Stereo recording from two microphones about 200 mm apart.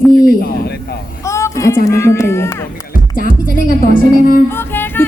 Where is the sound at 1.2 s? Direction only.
15° left (ahead or behind).